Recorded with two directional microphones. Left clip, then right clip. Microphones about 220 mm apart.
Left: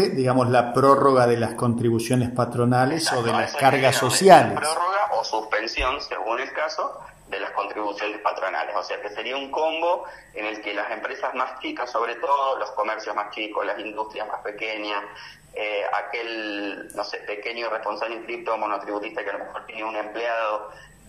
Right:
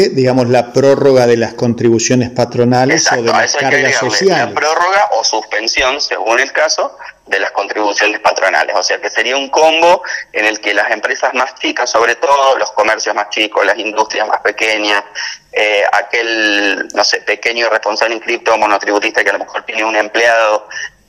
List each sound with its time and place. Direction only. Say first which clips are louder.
0.0 s a man's voice: right 10 dB; 15° right (ahead or behind)
3.3 s speech: right 9 dB; 25° right (ahead or behind)
4.6 s radio: right 12 dB; 25° right (ahead or behind)
5.3 s speech: right 10 dB; 15° right (ahead or behind)